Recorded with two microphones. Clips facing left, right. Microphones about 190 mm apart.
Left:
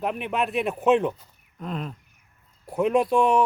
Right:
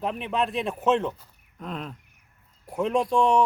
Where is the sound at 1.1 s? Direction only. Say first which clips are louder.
Left 2 dB; centre (ahead or behind).